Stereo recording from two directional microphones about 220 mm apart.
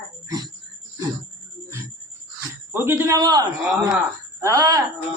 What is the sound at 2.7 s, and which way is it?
A man's voice, 10° right (ahead or behind).